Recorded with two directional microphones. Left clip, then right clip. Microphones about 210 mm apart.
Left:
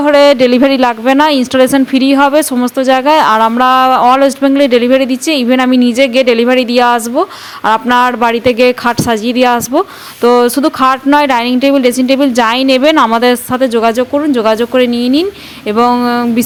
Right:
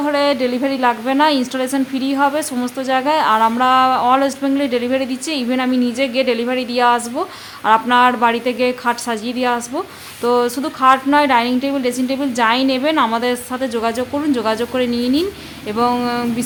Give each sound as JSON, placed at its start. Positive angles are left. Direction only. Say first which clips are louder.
{"t": 0.0, "sound": "a woman's voice", "louder": "left 10 dB", "side_deg": 35}